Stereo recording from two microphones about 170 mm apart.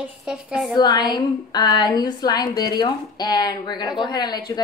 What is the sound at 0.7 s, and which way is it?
Speech, 25° left (ahead or behind).